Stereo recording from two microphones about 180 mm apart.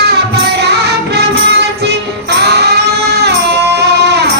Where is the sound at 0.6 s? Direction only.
65° right (ahead or behind).